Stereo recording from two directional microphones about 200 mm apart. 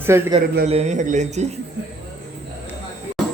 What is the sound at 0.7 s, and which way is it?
Speech, 35° right (ahead or behind).